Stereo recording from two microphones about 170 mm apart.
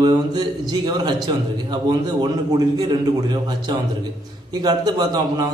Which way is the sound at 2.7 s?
25° right (ahead or behind).